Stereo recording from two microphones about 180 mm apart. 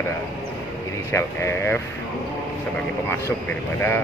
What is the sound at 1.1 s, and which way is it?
Speech, 15° left (ahead or behind).